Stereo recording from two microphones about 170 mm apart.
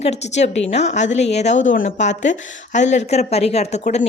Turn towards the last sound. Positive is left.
turn(degrees=40)  # may be behind; listen again after turning